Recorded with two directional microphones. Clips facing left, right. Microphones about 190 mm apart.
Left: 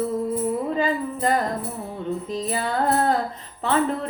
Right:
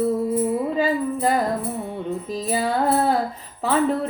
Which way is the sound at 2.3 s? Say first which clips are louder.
Right 4 dB; 5° right (ahead or behind).